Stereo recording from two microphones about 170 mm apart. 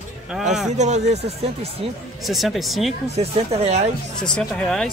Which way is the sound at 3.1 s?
40° right (ahead or behind).